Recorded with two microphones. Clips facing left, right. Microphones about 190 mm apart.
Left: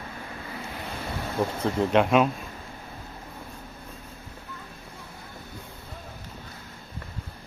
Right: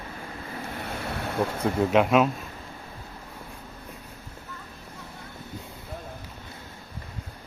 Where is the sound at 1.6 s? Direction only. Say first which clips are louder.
Right 1 dB; 5° right (ahead or behind).